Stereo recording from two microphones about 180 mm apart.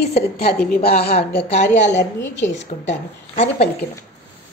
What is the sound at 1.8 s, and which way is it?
Speech, 40° left (ahead or behind).